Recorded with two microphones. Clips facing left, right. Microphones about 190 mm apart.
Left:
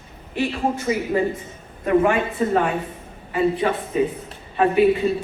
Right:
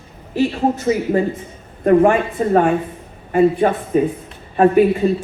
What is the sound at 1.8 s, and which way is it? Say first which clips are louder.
A woman's voice: right 5 dB; 45° right (ahead or behind).